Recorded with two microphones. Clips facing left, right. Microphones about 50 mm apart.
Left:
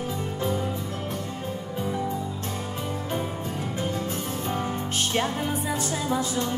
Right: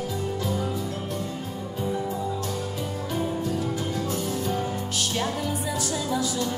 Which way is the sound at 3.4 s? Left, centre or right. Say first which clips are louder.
Right 2 dB; left.